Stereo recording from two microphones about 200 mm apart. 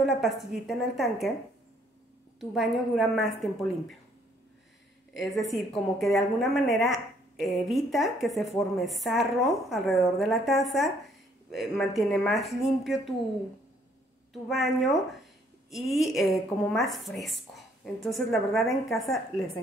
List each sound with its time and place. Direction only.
0.0 s a woman's voice: centre (ahead or behind)
2.5 s a woman's voice: centre (ahead or behind)
5.1 s a woman's voice: centre (ahead or behind)
14.5 s a woman's voice: centre (ahead or behind)